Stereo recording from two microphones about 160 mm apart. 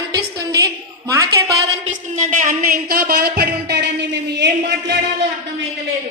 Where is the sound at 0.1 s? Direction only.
25° right (ahead or behind).